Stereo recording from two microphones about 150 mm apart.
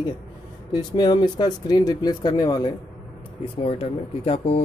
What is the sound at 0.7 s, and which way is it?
Speech, 25° left (ahead or behind).